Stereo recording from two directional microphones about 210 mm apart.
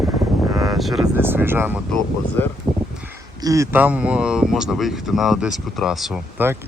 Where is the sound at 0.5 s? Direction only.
15° right (ahead or behind).